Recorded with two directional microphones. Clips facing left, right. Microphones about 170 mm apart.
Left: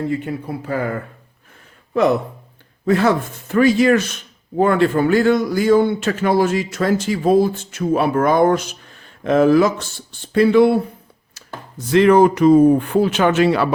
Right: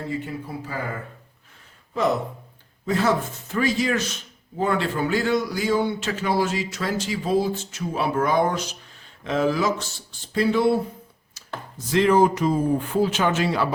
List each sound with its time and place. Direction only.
0.1 s speech: 65° left (ahead or behind)
2.8 s speech: 60° left (ahead or behind)
11.4 s a sound: 60° left (ahead or behind)
11.9 s speech: 65° left (ahead or behind)